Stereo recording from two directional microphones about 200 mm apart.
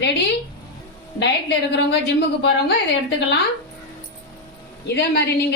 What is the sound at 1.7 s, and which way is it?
Speech, 60° left (ahead or behind).